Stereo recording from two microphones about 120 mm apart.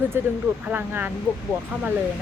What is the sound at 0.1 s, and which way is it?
Speech, 20° right (ahead or behind).